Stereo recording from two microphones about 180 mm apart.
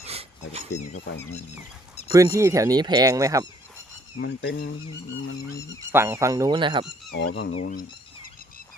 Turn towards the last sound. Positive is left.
turn(degrees=50)  # may be behind; listen again after turning